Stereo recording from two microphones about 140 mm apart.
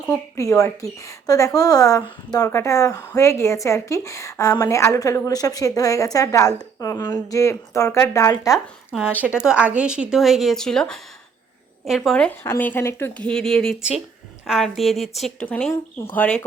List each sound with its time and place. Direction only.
0.3 s a woman's voice: 20° left (ahead or behind)
8.5 s a woman's voice: 5° right (ahead or behind)